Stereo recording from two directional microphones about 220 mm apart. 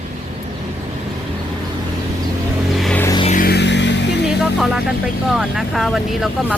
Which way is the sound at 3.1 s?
25° left (ahead or behind).